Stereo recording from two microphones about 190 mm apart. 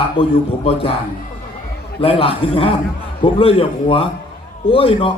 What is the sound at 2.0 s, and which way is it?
A man's voice, 30° left (ahead or behind).